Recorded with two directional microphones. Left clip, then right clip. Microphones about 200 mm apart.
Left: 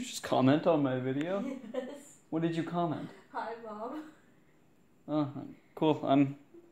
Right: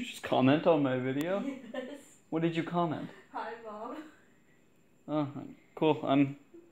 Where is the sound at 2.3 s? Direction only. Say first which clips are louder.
Right 1 dB; 15° right (ahead or behind).